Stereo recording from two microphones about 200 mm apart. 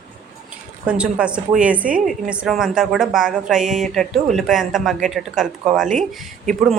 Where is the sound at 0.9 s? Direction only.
5° right (ahead or behind).